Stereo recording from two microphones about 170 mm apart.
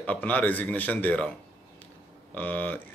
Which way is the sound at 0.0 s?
10° left (ahead or behind).